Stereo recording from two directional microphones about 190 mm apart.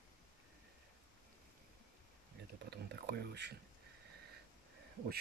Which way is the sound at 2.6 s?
60° right (ahead or behind).